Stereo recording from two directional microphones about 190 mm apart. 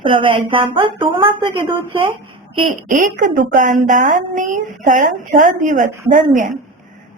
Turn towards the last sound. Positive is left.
turn(degrees=-40)  # may be behind; listen again after turning